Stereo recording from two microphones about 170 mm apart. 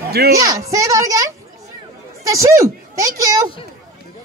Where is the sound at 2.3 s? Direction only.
20° right (ahead or behind).